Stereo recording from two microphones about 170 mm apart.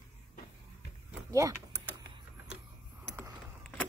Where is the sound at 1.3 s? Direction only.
20° right (ahead or behind).